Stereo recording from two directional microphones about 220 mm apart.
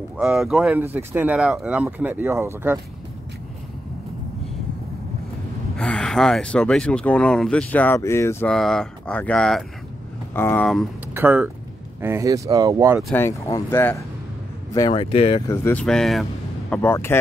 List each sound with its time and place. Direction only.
0.2 s speech: centre (ahead or behind)
5.8 s speech: 5° left (ahead or behind)
11.1 s speech: 5° right (ahead or behind)
13.1 s speech: 10° left (ahead or behind); by 15.4 s 25° left (ahead or behind)
15.4 s speech: 10° left (ahead or behind)